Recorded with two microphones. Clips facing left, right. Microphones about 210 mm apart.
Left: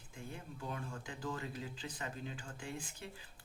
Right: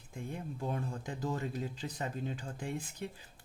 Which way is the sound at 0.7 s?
40° right (ahead or behind).